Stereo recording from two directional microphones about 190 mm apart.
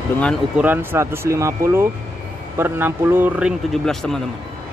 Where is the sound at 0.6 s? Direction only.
10° right (ahead or behind).